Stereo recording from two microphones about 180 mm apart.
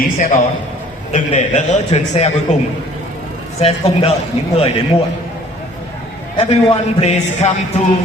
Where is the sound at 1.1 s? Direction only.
40° left (ahead or behind).